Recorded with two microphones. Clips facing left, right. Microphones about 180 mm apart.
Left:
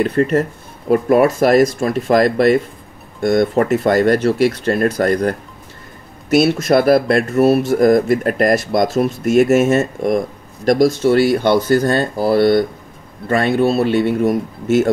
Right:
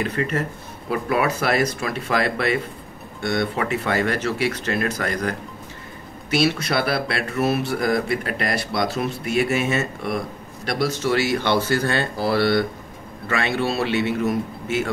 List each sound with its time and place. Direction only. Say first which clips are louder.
0.0 s speech: left 9 dB; 40° left (ahead or behind)
6.3 s speech: left 8 dB; 45° left (ahead or behind)
13.3 s speech: left 8 dB; 45° left (ahead or behind)